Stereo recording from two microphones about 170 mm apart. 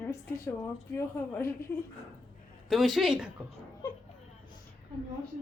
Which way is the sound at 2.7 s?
Centre (ahead or behind).